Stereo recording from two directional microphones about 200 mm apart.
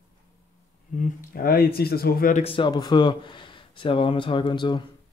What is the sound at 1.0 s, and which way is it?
Speech, 45° left (ahead or behind).